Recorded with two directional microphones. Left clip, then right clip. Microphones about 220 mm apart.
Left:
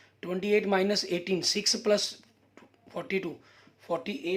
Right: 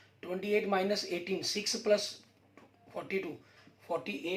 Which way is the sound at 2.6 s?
45° left (ahead or behind).